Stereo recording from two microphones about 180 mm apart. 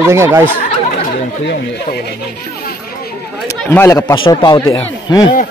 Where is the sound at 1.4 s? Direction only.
60° left (ahead or behind).